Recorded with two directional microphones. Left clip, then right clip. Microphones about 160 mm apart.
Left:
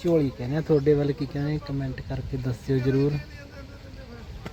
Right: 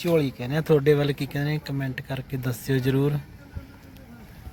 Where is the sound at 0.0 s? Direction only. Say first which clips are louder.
Even; 20° right (ahead or behind).